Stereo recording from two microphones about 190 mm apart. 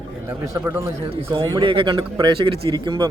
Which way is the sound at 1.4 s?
25° right (ahead or behind).